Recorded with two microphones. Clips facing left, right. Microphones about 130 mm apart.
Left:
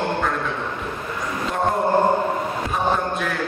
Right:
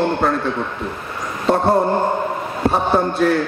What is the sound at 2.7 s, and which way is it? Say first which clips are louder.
Speech: right 6 dB; 35° right (ahead or behind).